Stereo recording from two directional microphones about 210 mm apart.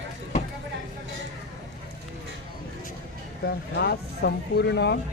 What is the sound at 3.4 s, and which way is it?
Speech, 50° left (ahead or behind).